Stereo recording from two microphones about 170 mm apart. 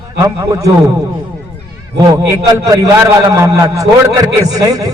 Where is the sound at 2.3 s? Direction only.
20° right (ahead or behind).